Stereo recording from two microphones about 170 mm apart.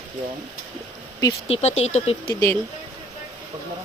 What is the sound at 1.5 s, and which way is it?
Speech, 40° left (ahead or behind).